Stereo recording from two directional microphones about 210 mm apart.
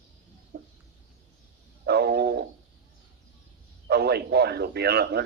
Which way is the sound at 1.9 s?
50° right (ahead or behind).